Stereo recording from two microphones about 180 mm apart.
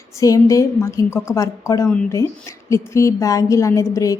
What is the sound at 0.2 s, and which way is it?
A woman's voice, 20° left (ahead or behind).